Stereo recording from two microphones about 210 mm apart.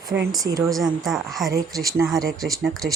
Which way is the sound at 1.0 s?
Centre (ahead or behind).